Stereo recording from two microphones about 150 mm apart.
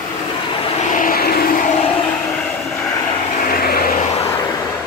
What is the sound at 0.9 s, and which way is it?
Vehicle, 75° left (ahead or behind).